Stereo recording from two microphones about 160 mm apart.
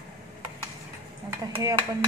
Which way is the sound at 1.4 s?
20° right (ahead or behind).